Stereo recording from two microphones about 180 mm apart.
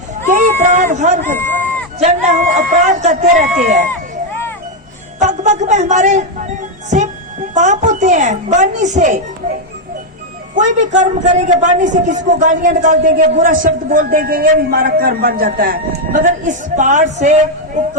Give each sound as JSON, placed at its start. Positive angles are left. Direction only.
{"t": 0.6, "sound": "a man's voice", "side_deg": -45}
{"t": 1.4, "sound": "speech", "side_deg": 10}
{"t": 2.0, "sound": "a man's voice", "side_deg": -40}
{"t": 5.2, "sound": "speech", "side_deg": -40}
{"t": 10.5, "sound": "a man's voice", "side_deg": -40}